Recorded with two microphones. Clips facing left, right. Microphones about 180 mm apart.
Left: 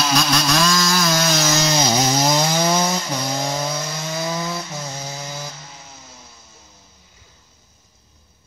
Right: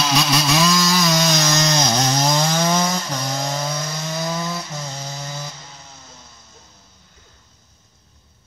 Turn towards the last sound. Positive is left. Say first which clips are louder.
# left 1 dB
turn(degrees=5)  # may be behind; listen again after turning